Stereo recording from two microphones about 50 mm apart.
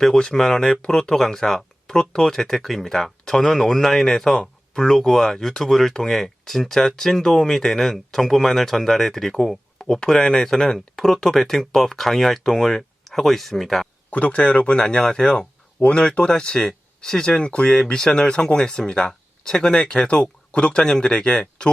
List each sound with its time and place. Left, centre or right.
0.0 s speech: centre
14.1 s speech: left